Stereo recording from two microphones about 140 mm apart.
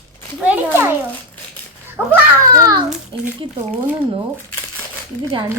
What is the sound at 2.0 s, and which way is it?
Children playing, 5° right (ahead or behind).